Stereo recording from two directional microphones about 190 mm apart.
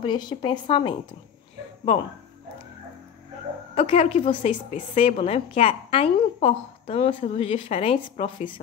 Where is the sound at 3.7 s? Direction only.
35° left (ahead or behind).